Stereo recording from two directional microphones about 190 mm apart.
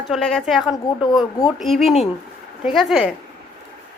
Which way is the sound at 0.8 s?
25° left (ahead or behind).